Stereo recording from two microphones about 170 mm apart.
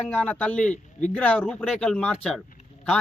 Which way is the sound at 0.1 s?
10° left (ahead or behind).